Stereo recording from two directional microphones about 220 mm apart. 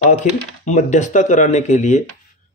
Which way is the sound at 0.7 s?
35° left (ahead or behind).